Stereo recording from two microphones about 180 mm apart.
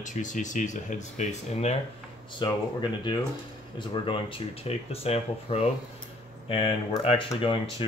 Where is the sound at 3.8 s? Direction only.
25° left (ahead or behind).